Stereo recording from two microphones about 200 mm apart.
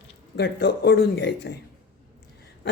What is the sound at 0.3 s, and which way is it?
Speech, 55° left (ahead or behind).